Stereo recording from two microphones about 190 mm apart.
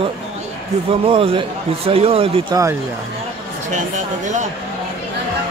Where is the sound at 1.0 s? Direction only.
30° right (ahead or behind).